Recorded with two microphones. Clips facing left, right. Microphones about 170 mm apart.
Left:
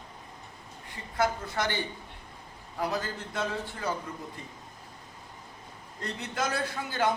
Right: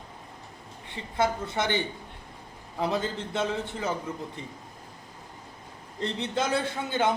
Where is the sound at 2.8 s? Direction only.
25° right (ahead or behind).